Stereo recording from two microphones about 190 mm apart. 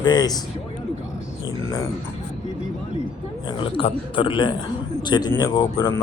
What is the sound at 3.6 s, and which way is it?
Speech, 30° left (ahead or behind).